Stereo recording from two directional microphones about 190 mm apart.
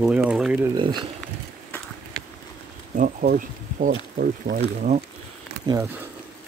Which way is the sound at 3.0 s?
45° right (ahead or behind).